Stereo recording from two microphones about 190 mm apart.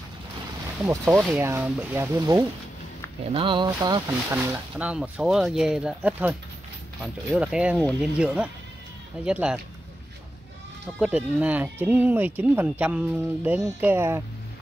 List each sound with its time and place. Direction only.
0.8 s speech: 15° right (ahead or behind)
4.5 s speech: 5° right (ahead or behind)
7.3 s speech: 5° right (ahead or behind)
11.0 s speech: 5° right (ahead or behind)